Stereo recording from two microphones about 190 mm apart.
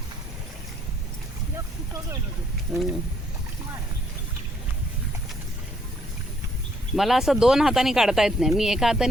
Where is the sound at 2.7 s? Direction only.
Centre (ahead or behind).